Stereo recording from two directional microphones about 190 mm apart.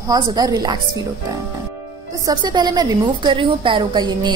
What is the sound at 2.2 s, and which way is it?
A woman's voice, 25° right (ahead or behind).